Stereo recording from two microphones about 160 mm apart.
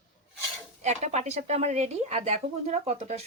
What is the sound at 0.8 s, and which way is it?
Speech, 45° right (ahead or behind).